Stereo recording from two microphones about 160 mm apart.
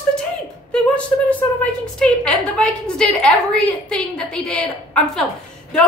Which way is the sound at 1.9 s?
5° left (ahead or behind).